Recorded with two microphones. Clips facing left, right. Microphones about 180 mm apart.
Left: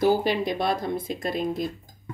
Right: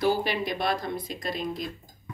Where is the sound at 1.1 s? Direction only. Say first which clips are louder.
Left 5 dB; 50° left (ahead or behind).